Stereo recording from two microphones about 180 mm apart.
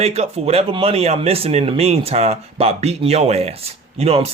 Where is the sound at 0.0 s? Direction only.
35° right (ahead or behind).